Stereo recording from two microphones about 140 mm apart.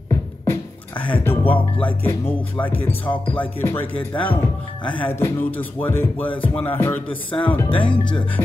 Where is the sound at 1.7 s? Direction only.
15° left (ahead or behind).